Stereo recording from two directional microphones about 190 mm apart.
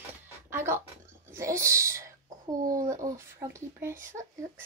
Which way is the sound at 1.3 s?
15° right (ahead or behind).